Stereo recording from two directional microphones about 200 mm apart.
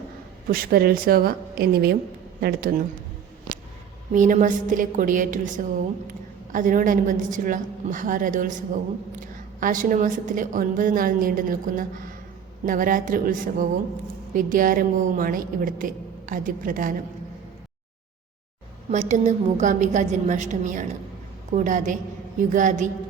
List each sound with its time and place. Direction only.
0.4 s a woman's voice: 50° right (ahead or behind)
4.1 s a woman's voice: 40° right (ahead or behind)
18.9 s a woman's voice: 35° right (ahead or behind)